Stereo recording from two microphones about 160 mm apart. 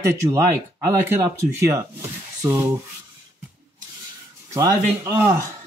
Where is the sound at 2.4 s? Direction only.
20° right (ahead or behind).